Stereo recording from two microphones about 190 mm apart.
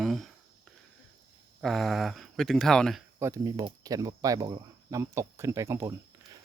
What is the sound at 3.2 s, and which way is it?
Speech, 15° right (ahead or behind).